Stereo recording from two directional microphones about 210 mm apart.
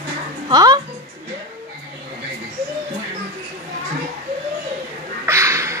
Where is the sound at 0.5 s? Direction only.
20° right (ahead or behind).